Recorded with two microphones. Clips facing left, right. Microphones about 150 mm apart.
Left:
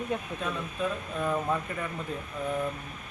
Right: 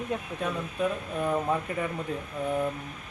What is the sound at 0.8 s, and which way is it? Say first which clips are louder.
Speech: right 3 dB; 15° right (ahead or behind).